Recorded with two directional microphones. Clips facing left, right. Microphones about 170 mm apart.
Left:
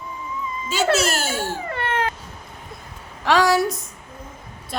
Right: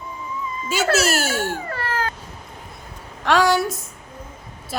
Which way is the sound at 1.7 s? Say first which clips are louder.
Left 2 dB; 25° left (ahead or behind).